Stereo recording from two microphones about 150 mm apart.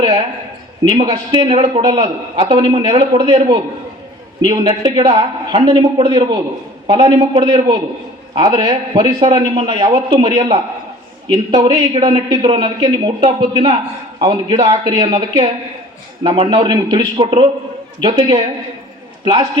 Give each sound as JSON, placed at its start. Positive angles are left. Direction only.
{"t": 0.9, "sound": "a man's voice", "side_deg": -35}
{"t": 16.2, "sound": "a man's voice", "side_deg": -35}